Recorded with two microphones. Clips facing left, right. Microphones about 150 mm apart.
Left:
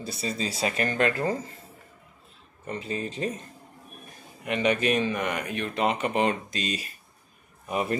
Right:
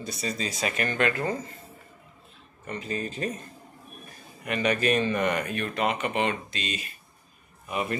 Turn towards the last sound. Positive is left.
turn(degrees=35)  # may be behind; listen again after turning